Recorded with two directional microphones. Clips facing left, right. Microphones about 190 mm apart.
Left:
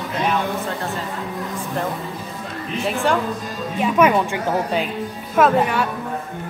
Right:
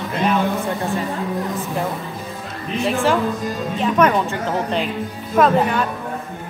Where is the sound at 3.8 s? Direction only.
10° left (ahead or behind).